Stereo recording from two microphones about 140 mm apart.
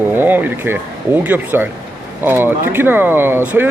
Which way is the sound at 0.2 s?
15° right (ahead or behind).